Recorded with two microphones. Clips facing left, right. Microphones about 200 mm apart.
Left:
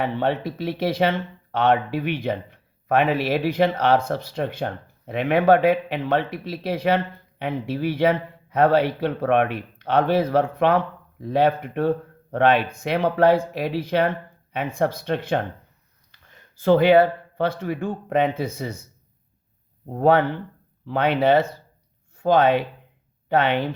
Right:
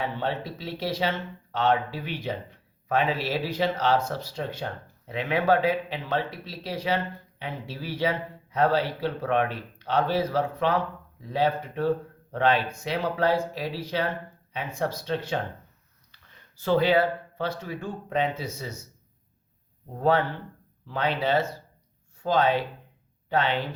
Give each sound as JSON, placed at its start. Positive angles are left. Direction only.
{"t": 0.0, "sound": "speech", "side_deg": 60}
{"t": 16.6, "sound": "speech", "side_deg": 55}
{"t": 19.9, "sound": "speech", "side_deg": 60}